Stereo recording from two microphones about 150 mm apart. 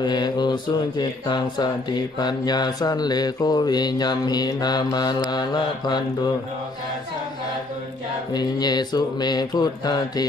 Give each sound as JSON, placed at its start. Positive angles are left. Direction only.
{"t": 0.0, "sound": "speech", "side_deg": 30}
{"t": 8.3, "sound": "speech", "side_deg": 30}